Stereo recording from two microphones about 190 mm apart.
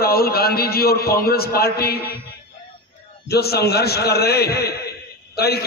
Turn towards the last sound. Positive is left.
turn(degrees=55)  # may be behind; listen again after turning